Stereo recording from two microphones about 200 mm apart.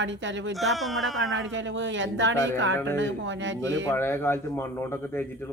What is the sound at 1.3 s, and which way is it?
Speech, 70° right (ahead or behind).